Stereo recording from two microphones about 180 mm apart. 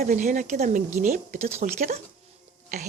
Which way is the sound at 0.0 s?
45° right (ahead or behind).